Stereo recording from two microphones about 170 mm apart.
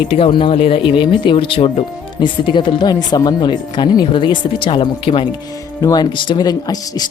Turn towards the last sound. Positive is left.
turn(degrees=20)  # may be behind; listen again after turning